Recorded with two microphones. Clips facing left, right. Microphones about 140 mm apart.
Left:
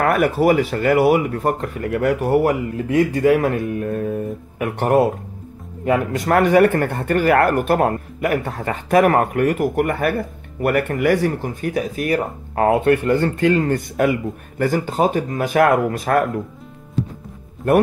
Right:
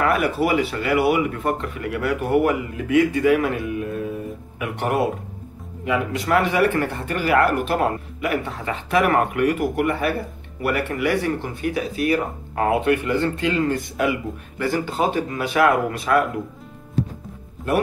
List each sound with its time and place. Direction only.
0.0 s speech: 50° left (ahead or behind)